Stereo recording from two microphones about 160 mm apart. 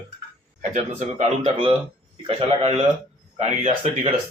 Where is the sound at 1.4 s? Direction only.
35° right (ahead or behind).